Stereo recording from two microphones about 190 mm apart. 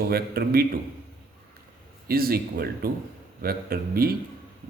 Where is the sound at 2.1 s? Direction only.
50° right (ahead or behind).